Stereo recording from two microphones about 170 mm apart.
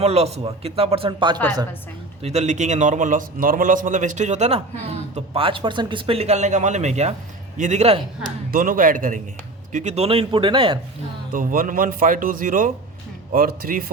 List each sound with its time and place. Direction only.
0.0 s speech: 40° right (ahead or behind)
2.2 s a man's voice: 40° right (ahead or behind)
8.5 s a man's voice: 55° right (ahead or behind)
9.7 s speech: 40° right (ahead or behind)
11.3 s a man's voice: 55° right (ahead or behind)